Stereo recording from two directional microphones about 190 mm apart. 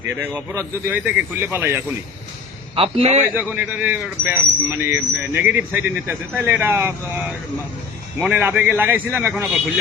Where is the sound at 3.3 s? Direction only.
10° right (ahead or behind).